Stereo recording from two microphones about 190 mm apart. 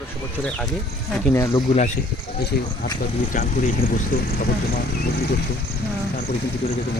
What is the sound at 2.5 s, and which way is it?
Speech, 50° left (ahead or behind).